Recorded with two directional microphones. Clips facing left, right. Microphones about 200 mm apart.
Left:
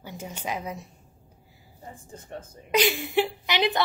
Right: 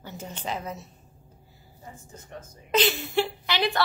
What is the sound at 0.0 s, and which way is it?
Speech, 10° left (ahead or behind).